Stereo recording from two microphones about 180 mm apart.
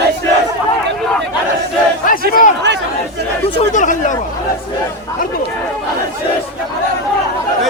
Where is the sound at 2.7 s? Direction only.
75° right (ahead or behind).